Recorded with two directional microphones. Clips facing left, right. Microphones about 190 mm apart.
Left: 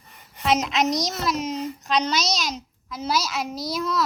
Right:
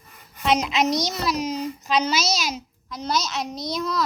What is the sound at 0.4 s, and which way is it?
A woman's voice, centre (ahead or behind).